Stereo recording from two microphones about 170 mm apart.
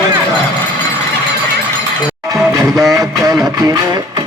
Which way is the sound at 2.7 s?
20° right (ahead or behind).